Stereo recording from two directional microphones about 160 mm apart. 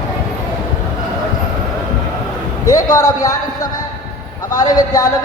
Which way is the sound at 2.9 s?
20° left (ahead or behind).